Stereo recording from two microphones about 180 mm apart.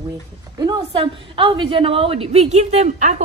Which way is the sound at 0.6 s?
25° right (ahead or behind).